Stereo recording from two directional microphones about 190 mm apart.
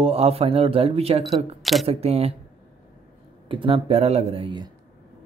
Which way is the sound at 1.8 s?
30° right (ahead or behind).